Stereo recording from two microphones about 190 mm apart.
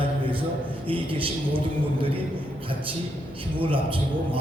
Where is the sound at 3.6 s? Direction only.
25° right (ahead or behind).